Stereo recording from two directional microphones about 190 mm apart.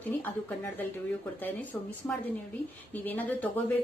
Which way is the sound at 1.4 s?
10° left (ahead or behind).